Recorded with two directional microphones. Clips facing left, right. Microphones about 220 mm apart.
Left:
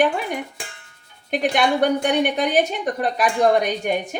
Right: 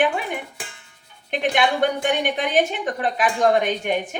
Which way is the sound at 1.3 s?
40° left (ahead or behind).